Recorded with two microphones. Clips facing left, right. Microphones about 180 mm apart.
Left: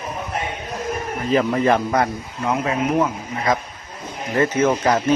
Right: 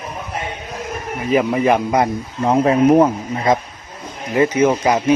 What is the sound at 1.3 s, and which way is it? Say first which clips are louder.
Speech: right 2 dB; 10° right (ahead or behind).